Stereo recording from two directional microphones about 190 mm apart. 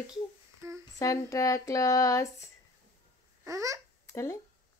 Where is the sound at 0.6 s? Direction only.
15° right (ahead or behind).